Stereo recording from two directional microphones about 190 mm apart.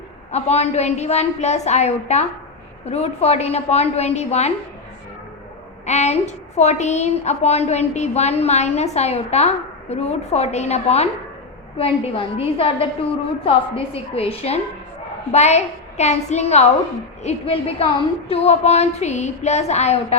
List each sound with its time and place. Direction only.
0.3 s a woman's voice: 35° left (ahead or behind)
5.8 s a woman's voice: 35° left (ahead or behind)